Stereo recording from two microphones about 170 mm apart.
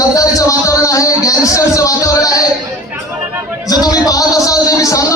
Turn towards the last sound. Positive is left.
turn(degrees=20)  # may be behind; listen again after turning